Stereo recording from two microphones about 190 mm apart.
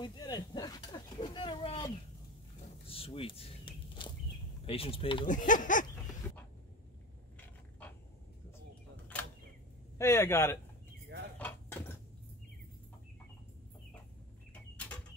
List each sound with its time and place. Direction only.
0.0 s a sound: 20° left (ahead or behind)
2.9 s walk: 30° left (ahead or behind)
4.6 s speech: 30° left (ahead or behind)
5.2 s speech: 45° left (ahead or behind)
6.2 s a sound: 10° left (ahead or behind)
9.9 s speech: 15° left (ahead or behind)
11.3 s cutlery: 10° left (ahead or behind)